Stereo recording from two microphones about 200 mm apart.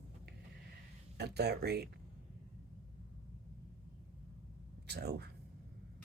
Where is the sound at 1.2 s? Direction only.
55° right (ahead or behind).